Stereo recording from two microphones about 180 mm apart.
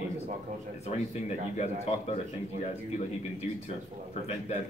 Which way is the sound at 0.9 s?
40° left (ahead or behind).